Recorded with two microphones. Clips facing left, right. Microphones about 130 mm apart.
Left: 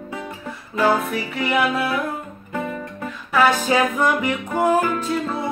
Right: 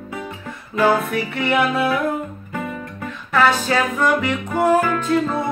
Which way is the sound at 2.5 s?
15° left (ahead or behind).